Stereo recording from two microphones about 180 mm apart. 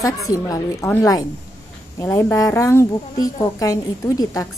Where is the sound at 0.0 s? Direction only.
20° left (ahead or behind).